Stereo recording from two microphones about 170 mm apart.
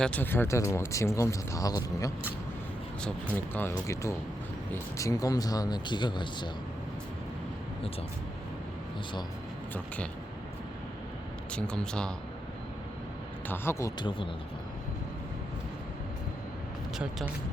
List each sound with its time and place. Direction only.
0.0 s speech: 10° left (ahead or behind); by 6.5 s 25° left (ahead or behind)
11.5 s speech: 5° left (ahead or behind)
13.5 s speech: 15° left (ahead or behind)
14.0 s speech: 30° left (ahead or behind)
17.0 s speech: 5° right (ahead or behind)